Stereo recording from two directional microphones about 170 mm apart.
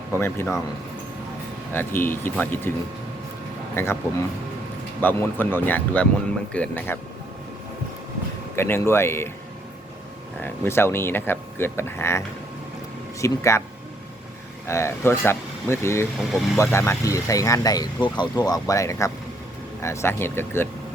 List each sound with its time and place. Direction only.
0.1 s speech: 15° left (ahead or behind)
1.7 s speech: 10° left (ahead or behind)
3.8 s speech: 15° left (ahead or behind)
4.9 s speech: 10° left (ahead or behind)
8.5 s speech: 15° left (ahead or behind)
10.4 s speech: 15° left (ahead or behind)
13.2 s speech: 15° left (ahead or behind)
14.7 s speech: 15° left (ahead or behind)